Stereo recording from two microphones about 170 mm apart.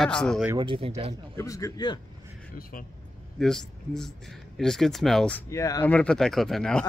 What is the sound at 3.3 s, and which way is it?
Speech, 5° left (ahead or behind).